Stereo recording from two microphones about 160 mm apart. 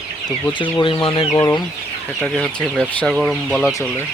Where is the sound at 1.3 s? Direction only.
20° left (ahead or behind).